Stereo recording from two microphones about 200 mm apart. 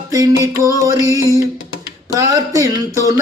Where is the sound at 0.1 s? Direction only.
15° right (ahead or behind).